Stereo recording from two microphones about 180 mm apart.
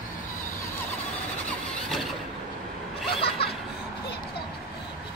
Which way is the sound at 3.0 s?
30° left (ahead or behind).